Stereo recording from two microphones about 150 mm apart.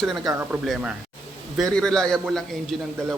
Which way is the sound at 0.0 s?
Centre (ahead or behind).